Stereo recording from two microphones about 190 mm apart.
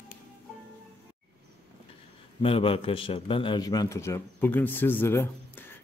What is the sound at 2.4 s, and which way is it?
A man's voice, 30° left (ahead or behind).